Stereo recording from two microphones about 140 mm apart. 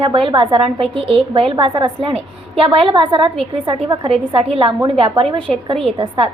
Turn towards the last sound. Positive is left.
turn(degrees=-40)  # may be behind; listen again after turning